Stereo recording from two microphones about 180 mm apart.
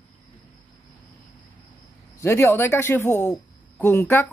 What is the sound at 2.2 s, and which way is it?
Speech, 15° left (ahead or behind).